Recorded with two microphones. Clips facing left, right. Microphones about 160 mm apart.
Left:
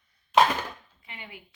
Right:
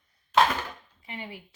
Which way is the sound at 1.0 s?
35° right (ahead or behind).